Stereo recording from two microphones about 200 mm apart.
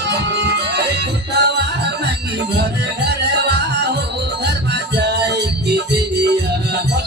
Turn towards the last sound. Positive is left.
turn(degrees=-55)  # may be behind; listen again after turning